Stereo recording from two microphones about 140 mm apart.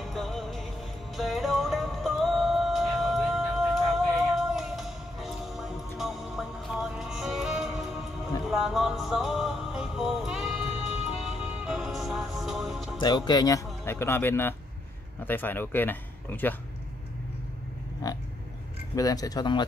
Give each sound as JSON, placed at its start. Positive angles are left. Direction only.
{"t": 0.0, "sound": "music", "side_deg": 0}
{"t": 12.9, "sound": "speech", "side_deg": 30}
{"t": 13.8, "sound": "speech", "side_deg": 15}
{"t": 18.0, "sound": "oink", "side_deg": 25}
{"t": 18.9, "sound": "speech", "side_deg": 25}